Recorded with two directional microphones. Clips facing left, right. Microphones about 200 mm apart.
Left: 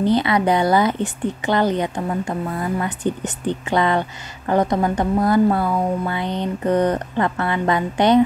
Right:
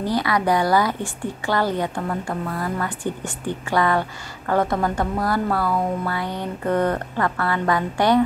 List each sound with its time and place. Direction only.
0.0 s a woman's voice: 25° left (ahead or behind)